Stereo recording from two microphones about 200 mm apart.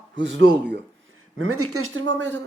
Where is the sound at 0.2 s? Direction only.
55° right (ahead or behind).